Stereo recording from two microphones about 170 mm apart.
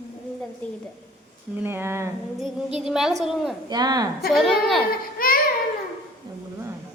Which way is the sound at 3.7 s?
25° right (ahead or behind).